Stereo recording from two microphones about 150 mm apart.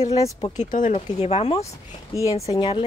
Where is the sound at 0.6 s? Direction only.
60° left (ahead or behind).